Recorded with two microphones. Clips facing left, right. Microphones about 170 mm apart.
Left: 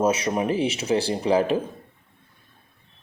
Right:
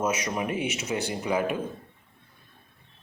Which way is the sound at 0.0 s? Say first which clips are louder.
Left 6 dB; 30° left (ahead or behind).